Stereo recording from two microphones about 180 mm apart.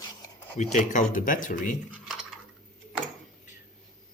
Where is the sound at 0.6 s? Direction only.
40° left (ahead or behind).